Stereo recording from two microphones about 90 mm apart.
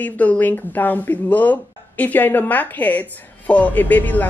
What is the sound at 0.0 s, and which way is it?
Speech, 20° left (ahead or behind).